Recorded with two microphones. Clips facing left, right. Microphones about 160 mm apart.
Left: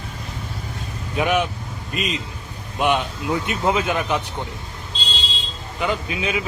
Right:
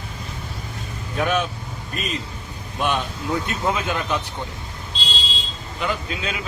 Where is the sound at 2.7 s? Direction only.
15° left (ahead or behind).